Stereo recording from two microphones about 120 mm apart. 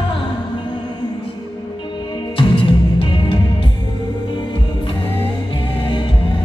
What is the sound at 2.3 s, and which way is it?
Music, 45° left (ahead or behind).